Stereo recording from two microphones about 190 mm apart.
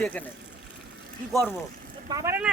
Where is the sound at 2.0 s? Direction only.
15° right (ahead or behind).